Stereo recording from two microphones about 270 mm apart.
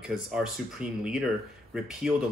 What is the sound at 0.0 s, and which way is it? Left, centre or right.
Speech, centre.